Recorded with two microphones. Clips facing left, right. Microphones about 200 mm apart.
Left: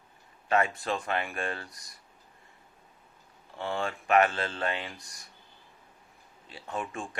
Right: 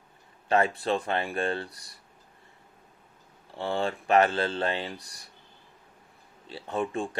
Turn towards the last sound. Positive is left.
turn(degrees=-35)  # may be behind; listen again after turning